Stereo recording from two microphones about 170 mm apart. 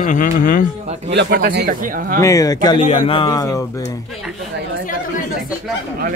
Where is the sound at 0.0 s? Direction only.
50° left (ahead or behind).